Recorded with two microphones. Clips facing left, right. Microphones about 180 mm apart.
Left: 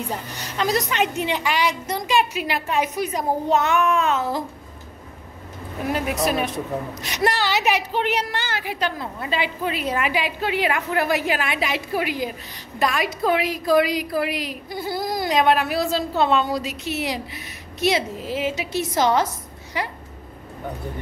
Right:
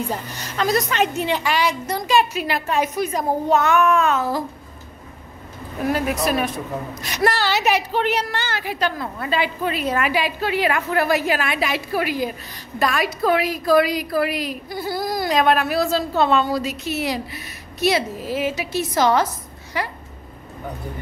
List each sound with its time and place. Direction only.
0.4 s a woman's voice: 15° left (ahead or behind)
5.9 s a woman's voice: 20° left (ahead or behind)